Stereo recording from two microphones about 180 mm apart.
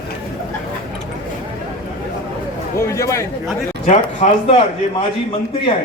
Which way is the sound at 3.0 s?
15° left (ahead or behind).